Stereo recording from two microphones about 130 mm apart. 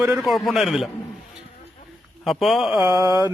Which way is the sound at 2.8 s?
25° right (ahead or behind).